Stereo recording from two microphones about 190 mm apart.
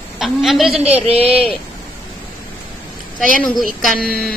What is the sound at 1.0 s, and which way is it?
Speech, 30° right (ahead or behind).